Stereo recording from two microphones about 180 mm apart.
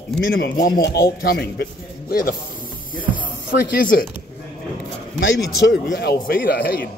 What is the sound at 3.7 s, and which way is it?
Speech, 55° left (ahead or behind).